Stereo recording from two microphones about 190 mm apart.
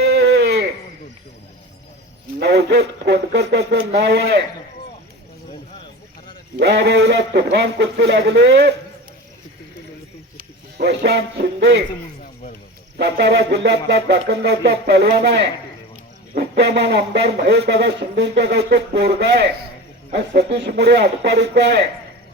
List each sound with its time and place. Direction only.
0.0 s a sound: 60° right (ahead or behind)
2.4 s speech: 65° right (ahead or behind)
6.6 s speech: 65° right (ahead or behind)
10.3 s speech: 60° right (ahead or behind)
13.0 s speech: 65° right (ahead or behind)